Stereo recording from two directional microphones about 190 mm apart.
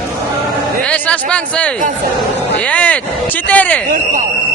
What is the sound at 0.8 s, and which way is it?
A man's voice, 5° left (ahead or behind).